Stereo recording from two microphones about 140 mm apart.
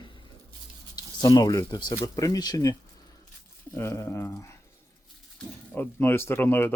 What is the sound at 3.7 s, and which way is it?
Speech, 20° left (ahead or behind).